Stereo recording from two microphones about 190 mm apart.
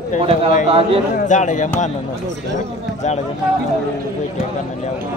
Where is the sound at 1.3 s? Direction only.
40° left (ahead or behind).